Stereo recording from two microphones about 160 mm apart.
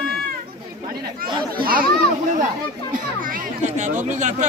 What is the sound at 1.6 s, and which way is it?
Speech, 65° right (ahead or behind).